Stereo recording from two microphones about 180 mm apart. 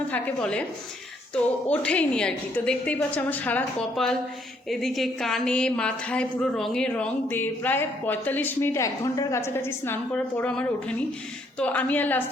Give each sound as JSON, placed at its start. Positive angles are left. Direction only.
{"t": 0.1, "sound": "a woman's voice", "side_deg": 5}
{"t": 1.6, "sound": "a woman's voice", "side_deg": 5}